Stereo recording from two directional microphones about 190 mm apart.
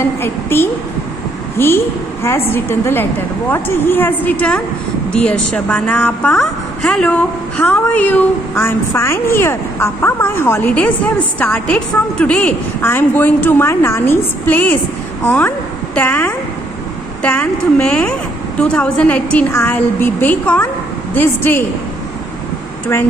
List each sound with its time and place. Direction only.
0.2 s a woman's voice: 10° left (ahead or behind)